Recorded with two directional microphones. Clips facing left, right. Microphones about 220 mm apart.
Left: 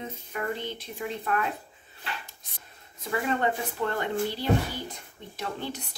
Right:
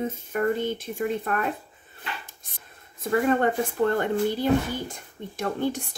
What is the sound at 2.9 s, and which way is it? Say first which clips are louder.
A woman's voice: right 6 dB; 50° right (ahead or behind).